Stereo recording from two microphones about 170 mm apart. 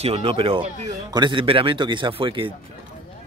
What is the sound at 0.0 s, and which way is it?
Speech, 35° right (ahead or behind).